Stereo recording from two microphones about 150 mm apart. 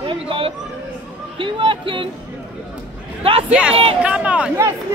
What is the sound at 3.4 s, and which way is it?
Speech, 10° right (ahead or behind).